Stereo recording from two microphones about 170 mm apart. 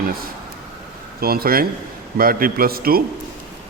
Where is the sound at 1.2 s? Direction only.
60° right (ahead or behind).